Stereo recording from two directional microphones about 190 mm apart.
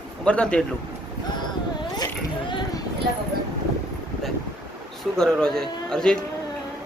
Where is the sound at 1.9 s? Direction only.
25° left (ahead or behind).